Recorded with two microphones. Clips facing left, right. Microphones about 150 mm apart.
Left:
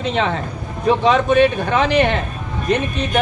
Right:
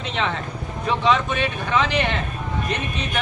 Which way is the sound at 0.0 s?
45° left (ahead or behind).